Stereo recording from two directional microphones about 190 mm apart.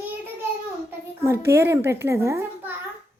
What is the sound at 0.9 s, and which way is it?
A child's voice, 15° right (ahead or behind).